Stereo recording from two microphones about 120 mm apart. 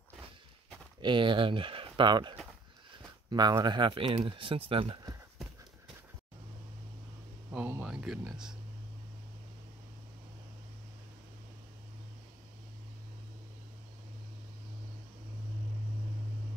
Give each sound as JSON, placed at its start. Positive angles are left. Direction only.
{"t": 1.0, "sound": "speech", "side_deg": -45}
{"t": 7.5, "sound": "speech", "side_deg": -15}
{"t": 7.8, "sound": "speech", "side_deg": -5}